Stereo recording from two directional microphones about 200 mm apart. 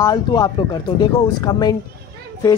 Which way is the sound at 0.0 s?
20° left (ahead or behind).